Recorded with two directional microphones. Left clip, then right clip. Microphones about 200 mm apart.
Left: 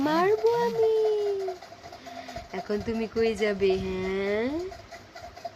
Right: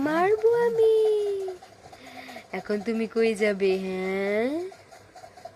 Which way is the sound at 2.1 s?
20° right (ahead or behind).